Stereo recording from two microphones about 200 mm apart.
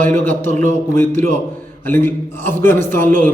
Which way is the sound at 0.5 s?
10° left (ahead or behind).